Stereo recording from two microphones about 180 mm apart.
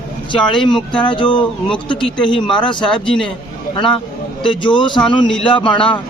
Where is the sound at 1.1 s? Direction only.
25° left (ahead or behind).